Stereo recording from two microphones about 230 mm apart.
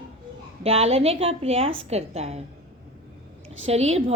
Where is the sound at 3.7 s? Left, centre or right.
Right.